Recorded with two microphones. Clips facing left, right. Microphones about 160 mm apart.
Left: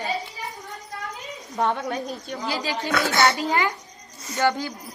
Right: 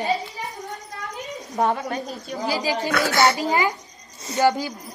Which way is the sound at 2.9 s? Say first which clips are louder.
Left 2 dB; 20° left (ahead or behind).